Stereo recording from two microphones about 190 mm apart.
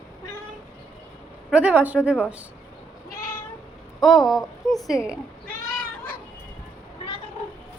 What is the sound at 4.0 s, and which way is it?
Speech, centre (ahead or behind).